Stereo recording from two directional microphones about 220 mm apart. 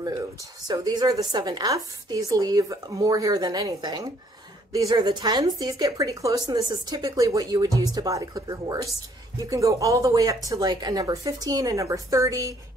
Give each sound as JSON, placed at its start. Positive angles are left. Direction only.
{"t": 0.7, "sound": "a woman's voice", "side_deg": -15}